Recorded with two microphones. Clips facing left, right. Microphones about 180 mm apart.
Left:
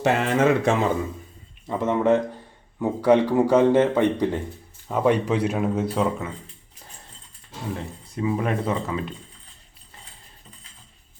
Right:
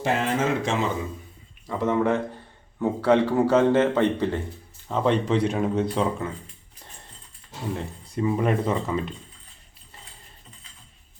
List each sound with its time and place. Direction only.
0.0 s speech: 70° left (ahead or behind)
1.6 s a man's voice: 20° left (ahead or behind); by 6.3 s 5° left (ahead or behind)
8.1 s speech: centre (ahead or behind)